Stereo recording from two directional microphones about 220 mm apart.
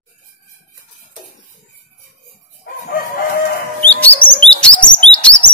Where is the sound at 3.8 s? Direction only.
5° left (ahead or behind).